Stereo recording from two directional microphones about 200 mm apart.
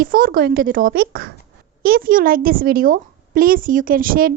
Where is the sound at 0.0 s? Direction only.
45° right (ahead or behind).